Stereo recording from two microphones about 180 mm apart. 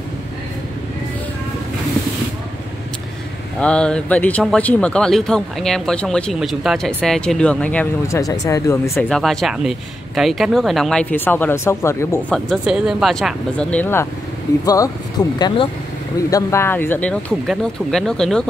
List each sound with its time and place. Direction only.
3.6 s speech: 5° left (ahead or behind)
9.1 s speech: centre (ahead or behind)
12.4 s speech: 5° right (ahead or behind)
14.6 s speech: 20° left (ahead or behind); by 18.4 s 5° left (ahead or behind)